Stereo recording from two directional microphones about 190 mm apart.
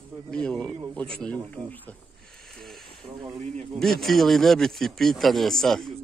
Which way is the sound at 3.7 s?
Centre (ahead or behind).